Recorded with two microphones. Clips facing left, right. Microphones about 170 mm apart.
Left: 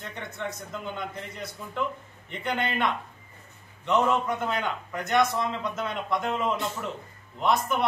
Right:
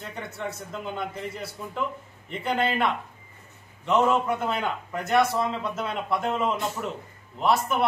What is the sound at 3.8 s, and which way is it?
A man's voice, 5° right (ahead or behind).